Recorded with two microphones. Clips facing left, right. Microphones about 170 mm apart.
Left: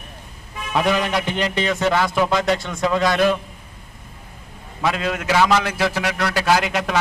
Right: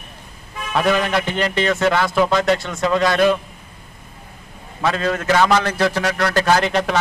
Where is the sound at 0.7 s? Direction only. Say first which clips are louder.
Right 2 dB; 15° left (ahead or behind).